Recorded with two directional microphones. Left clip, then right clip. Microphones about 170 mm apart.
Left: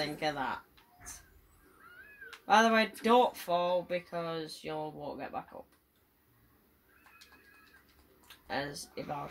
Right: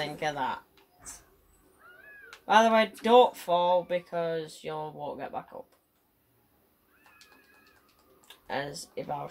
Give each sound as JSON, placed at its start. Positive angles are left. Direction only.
{"t": 0.0, "sound": "speech", "side_deg": -25}
{"t": 2.4, "sound": "speech", "side_deg": -25}
{"t": 8.5, "sound": "speech", "side_deg": -25}